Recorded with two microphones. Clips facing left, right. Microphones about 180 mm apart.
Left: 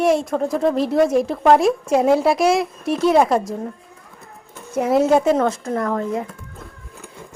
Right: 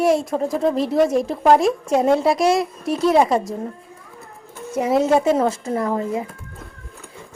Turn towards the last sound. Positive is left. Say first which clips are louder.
# even
turn(degrees=-5)  # may be behind; listen again after turning